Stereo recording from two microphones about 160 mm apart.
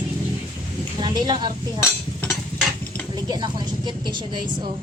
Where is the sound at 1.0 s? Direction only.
30° right (ahead or behind).